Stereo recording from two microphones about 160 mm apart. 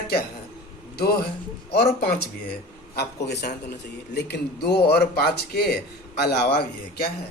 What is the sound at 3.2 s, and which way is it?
A man's voice, 90° left.